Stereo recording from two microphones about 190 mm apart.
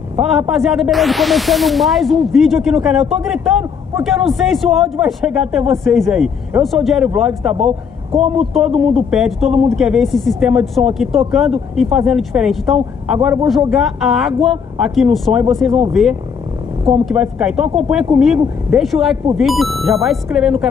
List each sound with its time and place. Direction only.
0.1 s speech: 5° right (ahead or behind)
7.5 s a man's voice: 30° right (ahead or behind)
8.5 s a man's voice: centre (ahead or behind)